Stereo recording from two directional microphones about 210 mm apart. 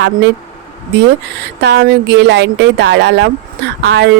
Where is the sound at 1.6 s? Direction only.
55° right (ahead or behind).